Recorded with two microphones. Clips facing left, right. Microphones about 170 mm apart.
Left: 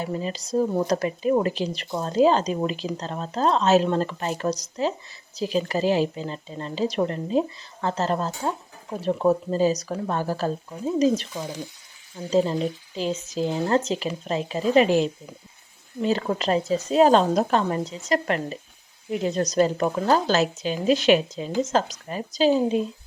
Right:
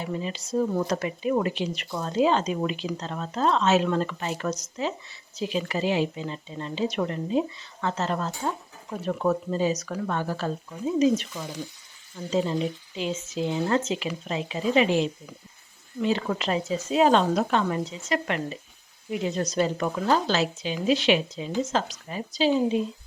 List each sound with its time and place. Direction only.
0.0 s speech: 40° left (ahead or behind)
12.3 s a woman's voice: 35° left (ahead or behind)